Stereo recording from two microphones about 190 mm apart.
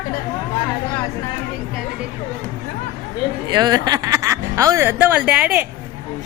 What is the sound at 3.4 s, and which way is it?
Speech, 20° right (ahead or behind).